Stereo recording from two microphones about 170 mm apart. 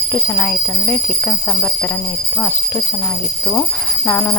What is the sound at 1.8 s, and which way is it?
Speech, 10° left (ahead or behind).